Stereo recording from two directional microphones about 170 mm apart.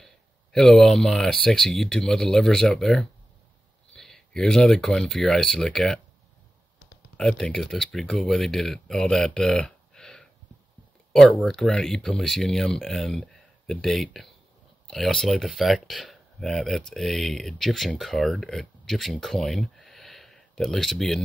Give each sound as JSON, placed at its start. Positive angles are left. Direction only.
{"t": 0.0, "sound": "speech", "side_deg": 0}
{"t": 7.2, "sound": "speech", "side_deg": 5}